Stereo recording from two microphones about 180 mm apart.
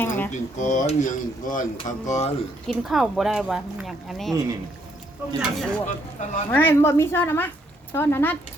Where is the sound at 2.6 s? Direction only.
Centre (ahead or behind).